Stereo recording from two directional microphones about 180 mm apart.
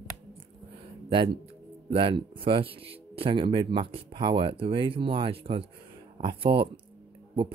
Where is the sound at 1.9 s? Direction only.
30° right (ahead or behind).